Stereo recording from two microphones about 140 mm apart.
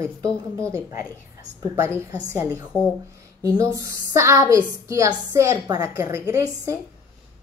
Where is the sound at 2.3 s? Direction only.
10° right (ahead or behind).